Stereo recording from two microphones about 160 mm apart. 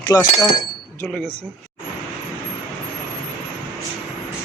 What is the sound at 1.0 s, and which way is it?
Speech, 10° left (ahead or behind).